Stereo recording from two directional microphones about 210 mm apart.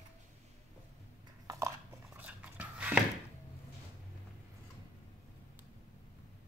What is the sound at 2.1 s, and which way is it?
Dog, 5° right (ahead or behind).